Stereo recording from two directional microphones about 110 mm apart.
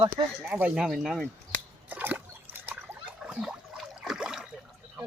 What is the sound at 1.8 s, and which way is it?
Trickle, 15° right (ahead or behind).